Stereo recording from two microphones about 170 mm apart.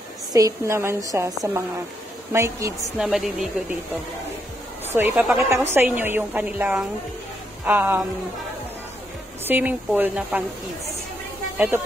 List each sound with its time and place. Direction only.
0.3 s a woman's voice: 20° right (ahead or behind)
3.0 s speech: 5° right (ahead or behind)
4.9 s a woman's voice: 10° right (ahead or behind)
9.5 s a woman's voice: 10° right (ahead or behind)
11.5 s speech: 10° right (ahead or behind)